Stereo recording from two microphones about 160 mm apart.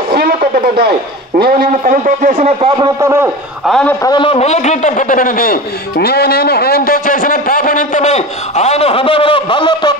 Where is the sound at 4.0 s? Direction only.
30° left (ahead or behind).